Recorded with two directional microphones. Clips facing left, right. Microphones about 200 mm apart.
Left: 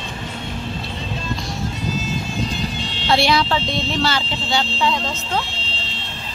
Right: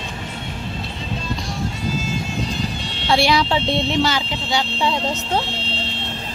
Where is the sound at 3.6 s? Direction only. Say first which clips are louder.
Right 4 dB; 65° right (ahead or behind).